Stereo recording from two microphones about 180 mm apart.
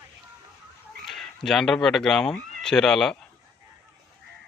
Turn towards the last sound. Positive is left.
turn(degrees=5)  # may be behind; listen again after turning